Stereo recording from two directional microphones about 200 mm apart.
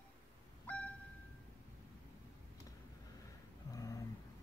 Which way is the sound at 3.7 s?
15° left (ahead or behind).